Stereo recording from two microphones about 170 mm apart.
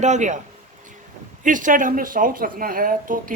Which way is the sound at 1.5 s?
50° right (ahead or behind).